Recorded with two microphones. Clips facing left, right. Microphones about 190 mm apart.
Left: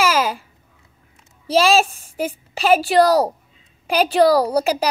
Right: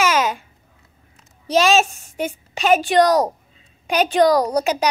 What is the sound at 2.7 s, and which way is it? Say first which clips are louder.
A woman's voice: left 1 dB; 5° left (ahead or behind).